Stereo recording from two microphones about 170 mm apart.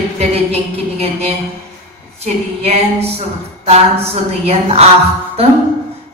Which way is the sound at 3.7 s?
35° right (ahead or behind).